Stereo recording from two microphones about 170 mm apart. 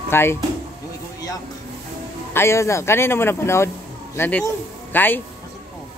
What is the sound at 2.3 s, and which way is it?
Speech, 15° left (ahead or behind).